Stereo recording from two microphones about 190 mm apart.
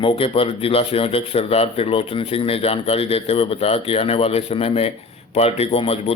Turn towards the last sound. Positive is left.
turn(degrees=30)  # may be behind; listen again after turning